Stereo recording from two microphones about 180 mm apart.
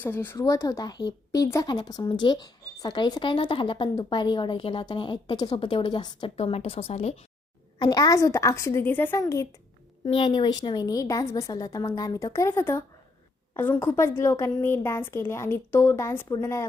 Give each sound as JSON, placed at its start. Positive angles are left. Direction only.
{"t": 0.0, "sound": "a woman's voice", "side_deg": 10}
{"t": 7.8, "sound": "a woman's voice", "side_deg": 20}
{"t": 13.8, "sound": "a woman's voice", "side_deg": 15}